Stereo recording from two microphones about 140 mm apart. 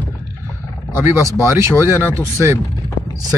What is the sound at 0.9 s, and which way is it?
Speech, 15° right (ahead or behind).